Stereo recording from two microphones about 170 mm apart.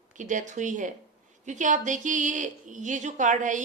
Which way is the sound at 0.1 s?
45° right (ahead or behind).